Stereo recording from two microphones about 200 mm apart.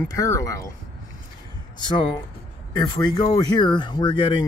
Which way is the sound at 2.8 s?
20° left (ahead or behind).